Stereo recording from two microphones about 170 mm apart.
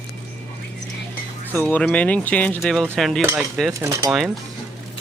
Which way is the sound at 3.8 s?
15° right (ahead or behind).